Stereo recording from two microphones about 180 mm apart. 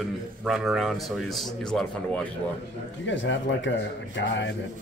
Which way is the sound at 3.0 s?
90° left.